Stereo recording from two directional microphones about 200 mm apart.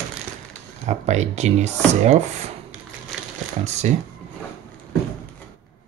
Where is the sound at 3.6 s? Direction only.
35° right (ahead or behind).